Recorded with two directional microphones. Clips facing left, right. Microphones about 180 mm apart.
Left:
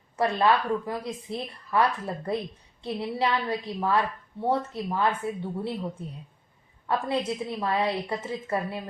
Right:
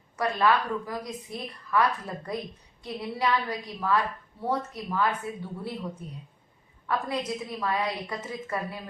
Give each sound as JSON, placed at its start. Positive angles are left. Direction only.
{"t": 0.2, "sound": "speech", "side_deg": 25}